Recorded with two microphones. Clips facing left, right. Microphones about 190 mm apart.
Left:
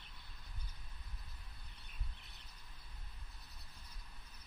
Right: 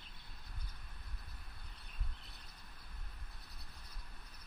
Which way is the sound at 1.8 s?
60° right (ahead or behind).